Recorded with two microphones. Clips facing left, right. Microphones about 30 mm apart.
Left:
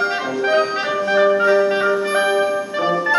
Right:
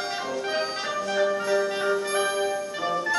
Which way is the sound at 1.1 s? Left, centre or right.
Left.